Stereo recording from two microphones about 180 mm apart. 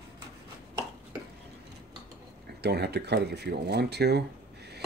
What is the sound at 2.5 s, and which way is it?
Speech, 65° right (ahead or behind).